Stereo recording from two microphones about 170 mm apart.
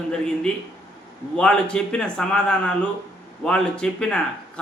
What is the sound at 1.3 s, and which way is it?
A man's voice, 5° left (ahead or behind).